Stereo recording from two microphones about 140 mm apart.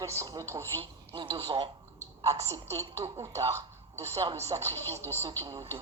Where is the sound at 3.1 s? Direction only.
20° right (ahead or behind).